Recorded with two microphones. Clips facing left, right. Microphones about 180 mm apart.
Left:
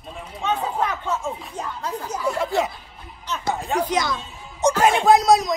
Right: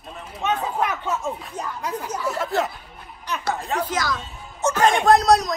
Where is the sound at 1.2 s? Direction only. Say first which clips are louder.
Even; centre (ahead or behind).